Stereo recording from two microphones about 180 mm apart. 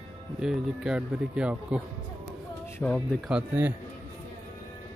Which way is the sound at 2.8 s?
5° left (ahead or behind).